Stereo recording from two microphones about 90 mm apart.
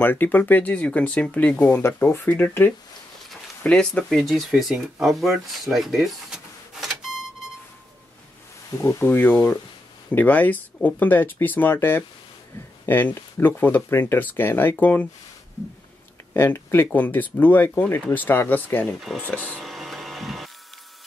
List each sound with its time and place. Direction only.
0.0 s speech: 20° left (ahead or behind)
3.6 s speech: 10° left (ahead or behind)
8.8 s speech: 25° left (ahead or behind)
16.3 s speech: 25° left (ahead or behind)
19.6 s a sound: centre (ahead or behind)